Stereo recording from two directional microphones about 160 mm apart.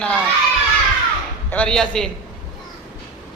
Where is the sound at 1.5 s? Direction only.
5° left (ahead or behind).